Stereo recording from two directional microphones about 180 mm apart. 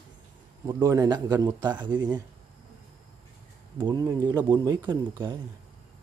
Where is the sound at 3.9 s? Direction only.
15° right (ahead or behind).